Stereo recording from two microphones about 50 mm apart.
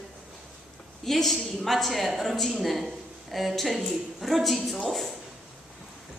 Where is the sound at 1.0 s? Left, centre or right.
Centre.